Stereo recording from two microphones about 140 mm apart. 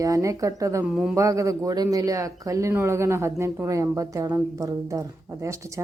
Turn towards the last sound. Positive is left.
turn(degrees=-20)  # may be behind; listen again after turning